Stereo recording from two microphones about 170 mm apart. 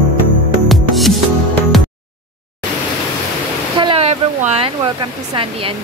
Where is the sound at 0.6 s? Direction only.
Centre (ahead or behind).